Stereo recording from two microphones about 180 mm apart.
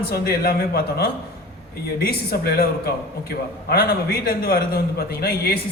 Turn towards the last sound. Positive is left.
turn(degrees=60)  # may be behind; listen again after turning